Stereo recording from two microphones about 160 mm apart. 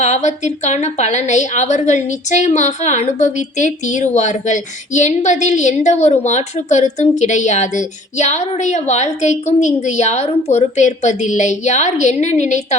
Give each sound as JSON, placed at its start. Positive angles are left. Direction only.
{"t": 0.0, "sound": "a woman's voice", "side_deg": 45}